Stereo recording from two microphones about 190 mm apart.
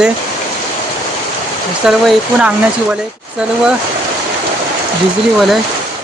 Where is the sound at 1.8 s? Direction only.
5° right (ahead or behind).